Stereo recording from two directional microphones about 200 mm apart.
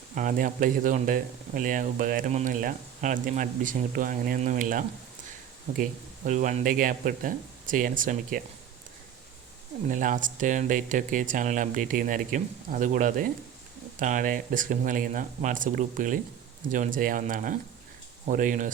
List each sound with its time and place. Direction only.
0.1 s speech: 40° right (ahead or behind)
6.2 s speech: 40° right (ahead or behind)
9.9 s speech: 40° right (ahead or behind)